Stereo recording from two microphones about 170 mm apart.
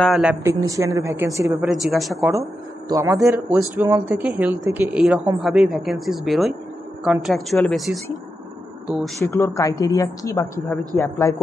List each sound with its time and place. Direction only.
0.0 s speech: 5° right (ahead or behind)
1.9 s a woman's voice: centre (ahead or behind)
2.9 s a man's voice: 20° right (ahead or behind); by 9.1 s 5° right (ahead or behind)
9.2 s a woman's voice: 20° left (ahead or behind)
10.6 s a woman's voice: centre (ahead or behind)
11.0 s a man's voice: 15° left (ahead or behind)